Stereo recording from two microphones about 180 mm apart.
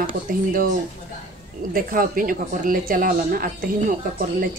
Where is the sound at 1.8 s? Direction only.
50° right (ahead or behind).